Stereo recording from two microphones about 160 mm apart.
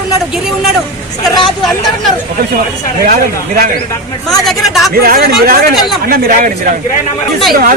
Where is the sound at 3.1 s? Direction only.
55° right (ahead or behind).